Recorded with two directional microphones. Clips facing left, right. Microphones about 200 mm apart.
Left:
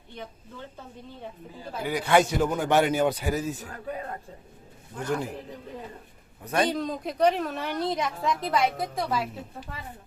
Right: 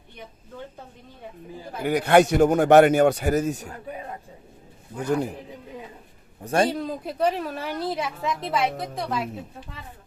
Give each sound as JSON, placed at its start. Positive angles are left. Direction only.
{"t": 1.8, "sound": "speech", "side_deg": -60}
{"t": 4.9, "sound": "a man's voice", "side_deg": -10}
{"t": 6.4, "sound": "a man's voice", "side_deg": -30}
{"t": 6.7, "sound": "a woman's voice", "side_deg": -5}